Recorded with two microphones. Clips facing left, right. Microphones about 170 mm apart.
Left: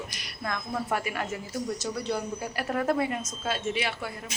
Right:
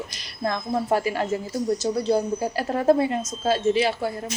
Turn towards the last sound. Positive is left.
turn(degrees=-35)  # may be behind; listen again after turning